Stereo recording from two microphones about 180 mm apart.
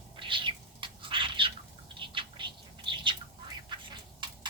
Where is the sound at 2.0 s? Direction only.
25° right (ahead or behind).